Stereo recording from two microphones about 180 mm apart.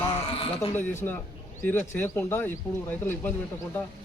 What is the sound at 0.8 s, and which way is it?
Speech, 10° left (ahead or behind).